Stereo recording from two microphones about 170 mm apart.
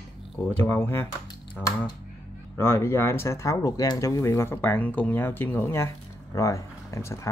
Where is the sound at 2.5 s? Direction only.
15° left (ahead or behind).